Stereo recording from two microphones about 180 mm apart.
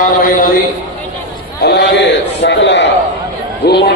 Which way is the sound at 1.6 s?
65° left (ahead or behind).